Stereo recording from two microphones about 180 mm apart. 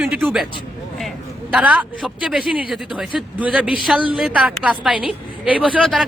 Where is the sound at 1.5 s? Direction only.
5° right (ahead or behind).